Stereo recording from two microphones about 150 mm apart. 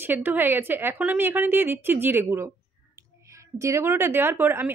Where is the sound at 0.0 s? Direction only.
10° right (ahead or behind).